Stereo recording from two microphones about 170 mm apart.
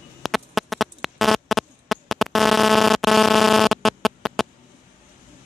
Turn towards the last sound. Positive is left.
turn(degrees=0)  # may be behind; listen again after turning